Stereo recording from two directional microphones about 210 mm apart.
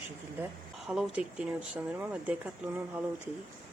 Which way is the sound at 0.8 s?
Centre (ahead or behind).